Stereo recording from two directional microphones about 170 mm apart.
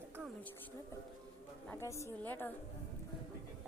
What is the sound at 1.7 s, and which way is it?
Speech, 15° left (ahead or behind).